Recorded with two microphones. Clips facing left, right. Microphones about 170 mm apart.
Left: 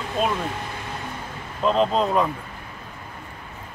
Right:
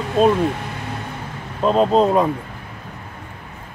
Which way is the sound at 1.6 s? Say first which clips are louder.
Right 5 dB; 40° right (ahead or behind).